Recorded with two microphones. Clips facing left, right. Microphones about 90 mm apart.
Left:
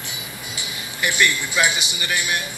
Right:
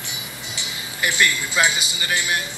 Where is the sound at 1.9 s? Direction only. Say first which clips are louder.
Even; 25° right (ahead or behind).